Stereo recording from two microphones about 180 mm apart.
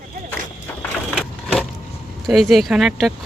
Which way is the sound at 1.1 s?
5° right (ahead or behind).